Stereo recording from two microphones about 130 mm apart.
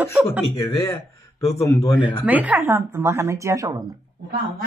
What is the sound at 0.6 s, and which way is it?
A man's voice, 25° left (ahead or behind).